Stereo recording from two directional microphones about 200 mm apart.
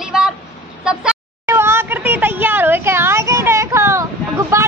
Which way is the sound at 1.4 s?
10° right (ahead or behind).